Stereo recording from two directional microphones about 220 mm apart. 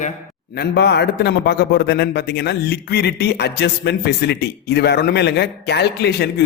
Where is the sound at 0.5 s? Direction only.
45° left (ahead or behind).